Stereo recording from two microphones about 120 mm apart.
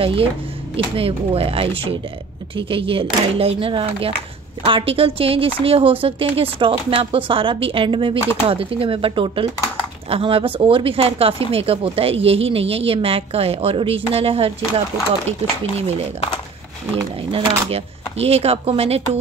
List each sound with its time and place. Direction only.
0.0 s speech: 50° right (ahead or behind)
17.3 s speech: 55° right (ahead or behind)